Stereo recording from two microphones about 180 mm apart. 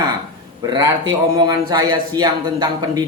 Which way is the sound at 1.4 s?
25° right (ahead or behind).